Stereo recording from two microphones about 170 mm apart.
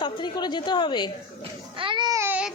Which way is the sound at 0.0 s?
25° left (ahead or behind).